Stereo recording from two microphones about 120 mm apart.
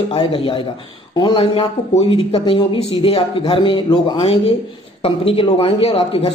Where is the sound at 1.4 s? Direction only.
55° left (ahead or behind).